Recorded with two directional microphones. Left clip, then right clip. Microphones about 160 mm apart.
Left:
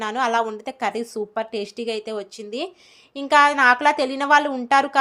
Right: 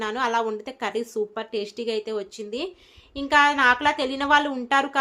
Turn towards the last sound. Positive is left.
turn(degrees=25)  # may be behind; listen again after turning